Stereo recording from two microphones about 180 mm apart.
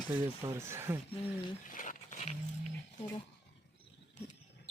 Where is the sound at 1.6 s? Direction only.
45° left (ahead or behind).